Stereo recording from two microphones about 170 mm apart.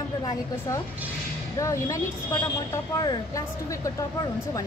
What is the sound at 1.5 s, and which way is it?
A woman's voice, 20° left (ahead or behind).